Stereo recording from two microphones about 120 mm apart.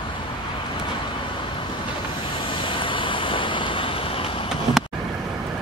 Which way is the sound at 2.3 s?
45° left (ahead or behind).